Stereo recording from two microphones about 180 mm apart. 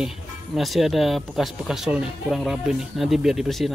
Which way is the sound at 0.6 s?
Centre (ahead or behind).